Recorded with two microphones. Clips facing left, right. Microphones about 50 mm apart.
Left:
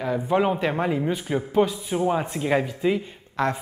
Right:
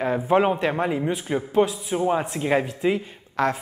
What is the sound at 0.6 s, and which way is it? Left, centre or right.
A man's voice, centre.